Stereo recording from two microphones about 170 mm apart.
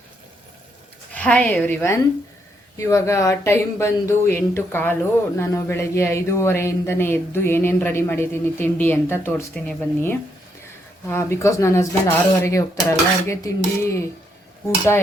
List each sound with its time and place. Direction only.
1.1 s speech: 10° left (ahead or behind)